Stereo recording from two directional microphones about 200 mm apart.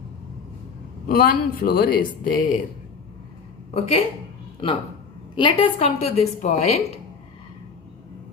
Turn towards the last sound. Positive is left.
turn(degrees=35)  # may be behind; listen again after turning